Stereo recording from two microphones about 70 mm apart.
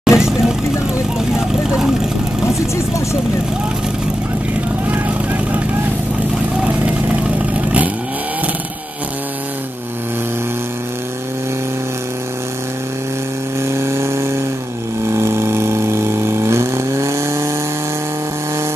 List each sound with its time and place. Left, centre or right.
0.0 s vehicle: centre
4.8 s vehicle: right
6.9 s vehicle: centre
13.7 s vehicle: right